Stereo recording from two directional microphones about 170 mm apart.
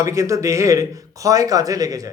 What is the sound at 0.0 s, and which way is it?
Speech, 20° right (ahead or behind).